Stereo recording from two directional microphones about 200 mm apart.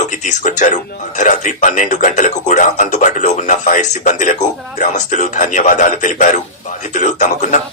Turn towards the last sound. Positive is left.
turn(degrees=40)  # may be behind; listen again after turning